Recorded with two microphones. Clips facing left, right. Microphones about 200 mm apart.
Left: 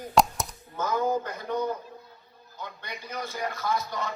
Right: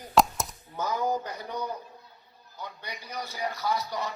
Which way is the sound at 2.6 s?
15° right (ahead or behind).